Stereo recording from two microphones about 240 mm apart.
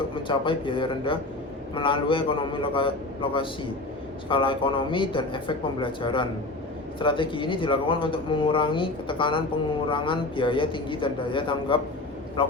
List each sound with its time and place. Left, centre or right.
0.3 s speech: left